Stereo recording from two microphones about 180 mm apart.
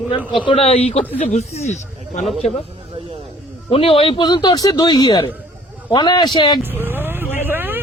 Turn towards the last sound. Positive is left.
turn(degrees=-10)  # may be behind; listen again after turning